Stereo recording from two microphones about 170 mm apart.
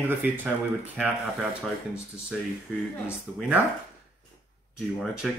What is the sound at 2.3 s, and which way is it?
Speech, centre (ahead or behind).